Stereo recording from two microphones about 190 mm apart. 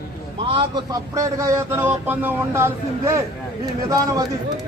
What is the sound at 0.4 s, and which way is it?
A man's voice, 25° right (ahead or behind).